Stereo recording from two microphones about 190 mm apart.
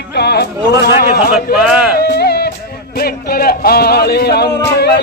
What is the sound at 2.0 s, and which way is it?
Music, 60° left (ahead or behind).